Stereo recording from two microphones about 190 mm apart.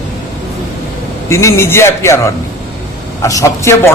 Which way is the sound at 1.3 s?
15° left (ahead or behind).